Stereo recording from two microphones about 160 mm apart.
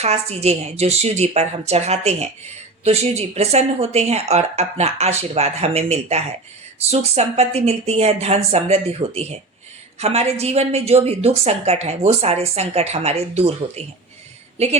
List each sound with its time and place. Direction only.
0.0 s a woman's voice: 40° right (ahead or behind)